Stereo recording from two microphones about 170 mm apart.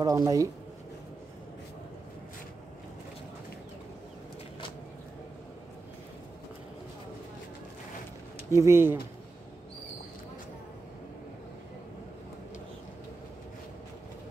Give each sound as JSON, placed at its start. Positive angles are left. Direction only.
{"t": 0.0, "sound": "speech", "side_deg": -20}
{"t": 8.5, "sound": "speech", "side_deg": -15}